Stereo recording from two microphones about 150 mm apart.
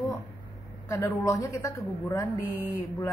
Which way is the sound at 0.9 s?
20° left (ahead or behind).